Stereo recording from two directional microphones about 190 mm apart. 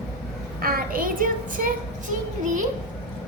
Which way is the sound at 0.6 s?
50° right (ahead or behind).